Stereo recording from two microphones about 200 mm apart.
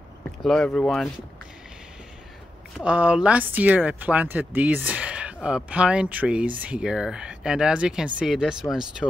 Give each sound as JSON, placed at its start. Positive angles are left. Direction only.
{"t": 0.4, "sound": "speech", "side_deg": 0}
{"t": 2.8, "sound": "speech", "side_deg": -5}